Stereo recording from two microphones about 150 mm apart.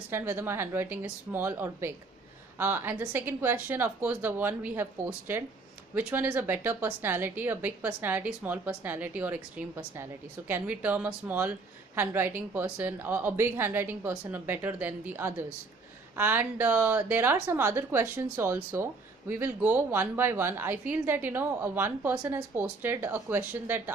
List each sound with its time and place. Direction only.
0.1 s a woman's voice: 15° right (ahead or behind)